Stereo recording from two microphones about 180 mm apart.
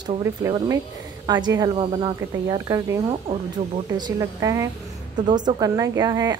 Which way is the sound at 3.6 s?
35° right (ahead or behind).